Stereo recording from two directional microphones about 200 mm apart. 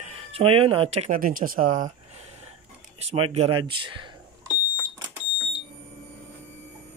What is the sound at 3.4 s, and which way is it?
Speech, 25° right (ahead or behind).